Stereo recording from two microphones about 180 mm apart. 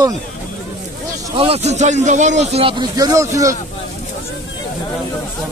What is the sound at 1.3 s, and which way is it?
A man's voice, 30° right (ahead or behind).